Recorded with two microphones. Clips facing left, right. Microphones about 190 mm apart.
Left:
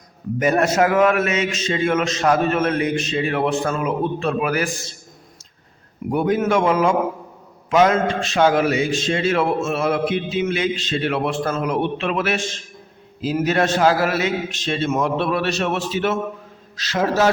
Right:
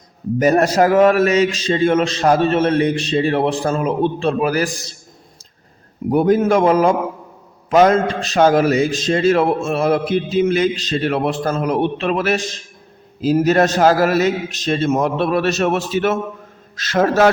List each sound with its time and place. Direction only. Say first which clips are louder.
0.3 s a man's voice: right 3 dB; 35° right (ahead or behind)
6.1 s a man's voice: right 5 dB; 35° right (ahead or behind); by 17.2 s 50° right (ahead or behind)